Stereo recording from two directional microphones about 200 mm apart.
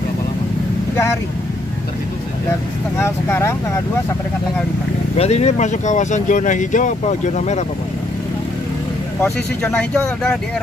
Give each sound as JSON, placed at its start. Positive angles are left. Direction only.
{"t": 3.0, "sound": "speech", "side_deg": 10}
{"t": 5.1, "sound": "speech", "side_deg": 30}
{"t": 9.2, "sound": "speech", "side_deg": 5}